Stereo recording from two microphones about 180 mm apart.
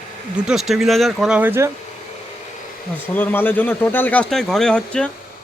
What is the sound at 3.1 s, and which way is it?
Speech, 10° left (ahead or behind).